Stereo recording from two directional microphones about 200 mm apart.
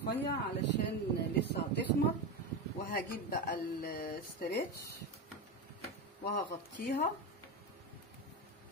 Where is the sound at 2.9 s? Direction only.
50° left (ahead or behind).